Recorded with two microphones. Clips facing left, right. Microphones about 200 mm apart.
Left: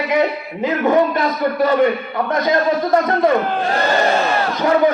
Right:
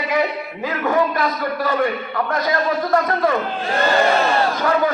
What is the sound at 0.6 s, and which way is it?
A man's voice, 20° left (ahead or behind).